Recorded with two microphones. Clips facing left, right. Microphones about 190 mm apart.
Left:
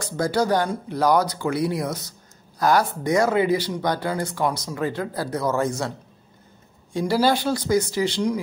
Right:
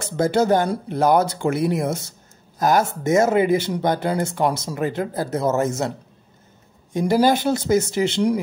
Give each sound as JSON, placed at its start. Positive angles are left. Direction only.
{"t": 0.0, "sound": "speech", "side_deg": -25}